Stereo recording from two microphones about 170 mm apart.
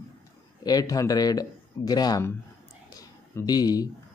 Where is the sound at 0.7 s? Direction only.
20° left (ahead or behind).